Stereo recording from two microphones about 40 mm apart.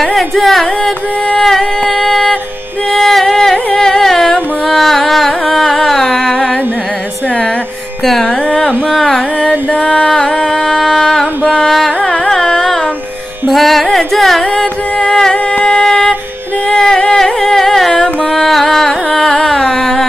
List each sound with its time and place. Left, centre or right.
0.0 s carnatic music: centre
1.9 s a sound: centre
2.9 s carnatic music: centre
8.0 s music: centre
8.5 s carnatic music: centre
10.0 s music: centre
11.6 s carnatic music: centre
14.6 s music: centre
15.6 s a sound: centre
16.7 s music: centre